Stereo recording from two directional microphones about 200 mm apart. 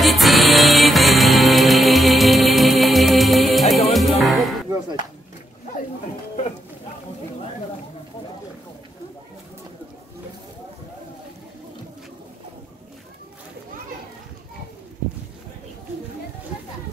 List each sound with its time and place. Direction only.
0.0 s music: centre (ahead or behind)
4.6 s speech: 20° right (ahead or behind)